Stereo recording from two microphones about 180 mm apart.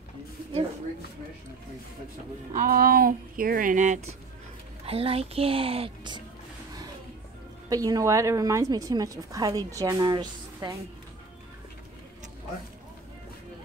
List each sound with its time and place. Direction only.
2.5 s speech: 50° right (ahead or behind)
4.8 s speech: 30° right (ahead or behind)
7.7 s a woman's voice: 20° right (ahead or behind)